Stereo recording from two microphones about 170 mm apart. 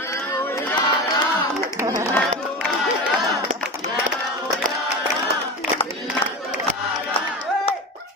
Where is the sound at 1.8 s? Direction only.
15° right (ahead or behind).